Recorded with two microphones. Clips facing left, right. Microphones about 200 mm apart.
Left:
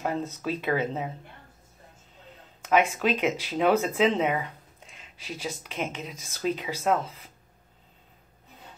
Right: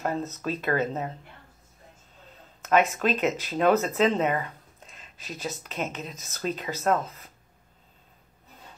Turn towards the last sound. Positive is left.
turn(degrees=10)  # may be behind; listen again after turning